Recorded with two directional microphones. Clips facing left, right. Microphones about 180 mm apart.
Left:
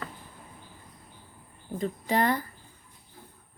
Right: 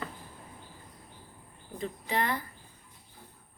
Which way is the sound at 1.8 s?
40° left (ahead or behind).